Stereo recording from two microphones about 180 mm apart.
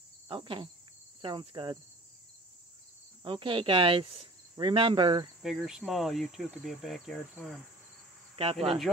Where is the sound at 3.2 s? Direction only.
30° right (ahead or behind).